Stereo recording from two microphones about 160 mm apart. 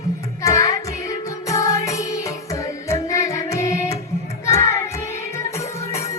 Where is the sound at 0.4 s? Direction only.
20° left (ahead or behind).